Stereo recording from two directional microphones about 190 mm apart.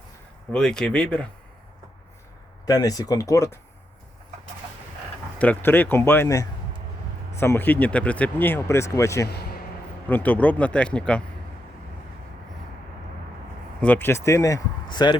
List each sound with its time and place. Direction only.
0.5 s speech: 5° left (ahead or behind)
2.6 s speech: 20° left (ahead or behind)
5.4 s speech: 10° left (ahead or behind)
9.2 s a man's voice: 55° left (ahead or behind)
10.1 s speech: 10° left (ahead or behind)
13.8 s speech: 10° left (ahead or behind)